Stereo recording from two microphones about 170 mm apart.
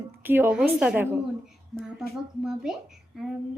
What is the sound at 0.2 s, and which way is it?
A woman's voice, 10° right (ahead or behind).